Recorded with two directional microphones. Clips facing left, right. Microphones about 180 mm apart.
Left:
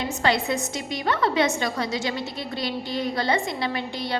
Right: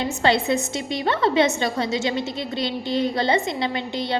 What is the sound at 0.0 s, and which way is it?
A woman's voice, 25° right (ahead or behind).